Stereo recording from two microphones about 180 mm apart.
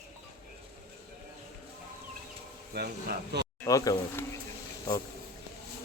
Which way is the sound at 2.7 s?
70° right (ahead or behind).